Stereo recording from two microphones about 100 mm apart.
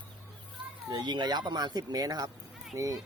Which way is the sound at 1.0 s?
45° right (ahead or behind).